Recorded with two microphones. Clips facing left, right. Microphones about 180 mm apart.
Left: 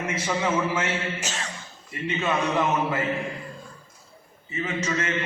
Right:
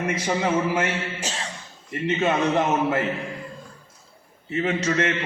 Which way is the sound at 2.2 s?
55° right (ahead or behind).